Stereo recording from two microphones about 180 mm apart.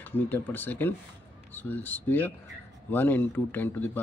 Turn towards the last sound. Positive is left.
turn(degrees=10)  # may be behind; listen again after turning